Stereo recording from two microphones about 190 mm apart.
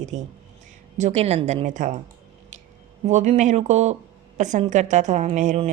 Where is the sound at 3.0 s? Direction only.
35° right (ahead or behind).